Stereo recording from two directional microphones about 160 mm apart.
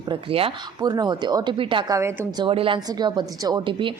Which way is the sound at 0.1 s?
35° right (ahead or behind).